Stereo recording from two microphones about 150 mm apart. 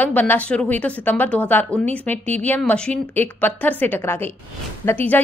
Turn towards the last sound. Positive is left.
turn(degrees=15)  # may be behind; listen again after turning